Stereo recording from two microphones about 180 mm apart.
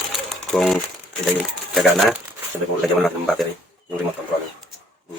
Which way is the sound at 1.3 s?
Centre (ahead or behind).